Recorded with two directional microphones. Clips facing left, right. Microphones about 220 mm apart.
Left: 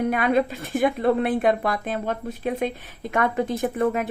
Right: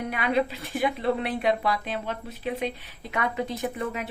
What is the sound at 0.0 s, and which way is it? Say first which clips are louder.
Speech: left 5 dB; 50° left (ahead or behind).